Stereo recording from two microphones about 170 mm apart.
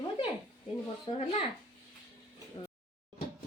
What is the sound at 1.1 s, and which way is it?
Speech, 40° left (ahead or behind).